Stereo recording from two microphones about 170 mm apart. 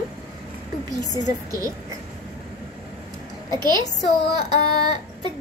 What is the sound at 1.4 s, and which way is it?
Speech, 20° right (ahead or behind).